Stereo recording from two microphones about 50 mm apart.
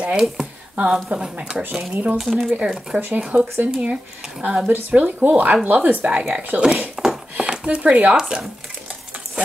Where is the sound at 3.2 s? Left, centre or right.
Right.